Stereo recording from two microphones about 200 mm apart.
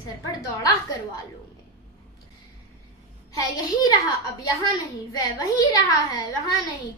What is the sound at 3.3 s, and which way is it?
Speech, 20° left (ahead or behind).